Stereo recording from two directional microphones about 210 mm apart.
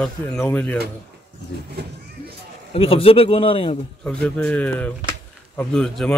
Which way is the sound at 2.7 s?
25° left (ahead or behind).